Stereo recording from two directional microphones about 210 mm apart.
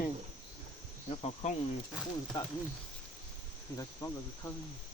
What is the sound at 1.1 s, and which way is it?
Speech, 30° left (ahead or behind).